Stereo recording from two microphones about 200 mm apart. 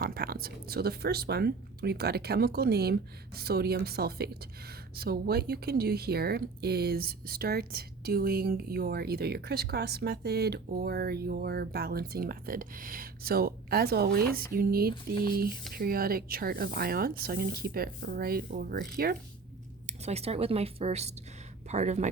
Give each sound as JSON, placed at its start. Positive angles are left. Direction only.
{"t": 0.0, "sound": "speech", "side_deg": -50}
{"t": 19.9, "sound": "speech", "side_deg": -35}